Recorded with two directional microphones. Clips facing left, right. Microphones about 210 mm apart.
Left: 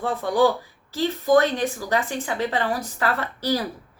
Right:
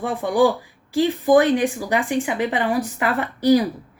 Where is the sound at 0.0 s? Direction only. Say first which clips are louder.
Right 2 dB; 15° right (ahead or behind).